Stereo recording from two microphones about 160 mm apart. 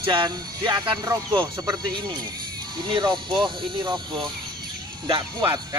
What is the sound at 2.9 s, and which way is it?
Speech, 30° right (ahead or behind).